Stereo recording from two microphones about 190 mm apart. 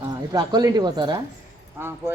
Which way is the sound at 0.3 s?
20° right (ahead or behind).